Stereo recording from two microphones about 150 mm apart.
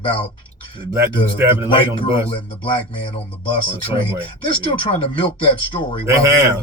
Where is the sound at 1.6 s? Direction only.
35° left (ahead or behind).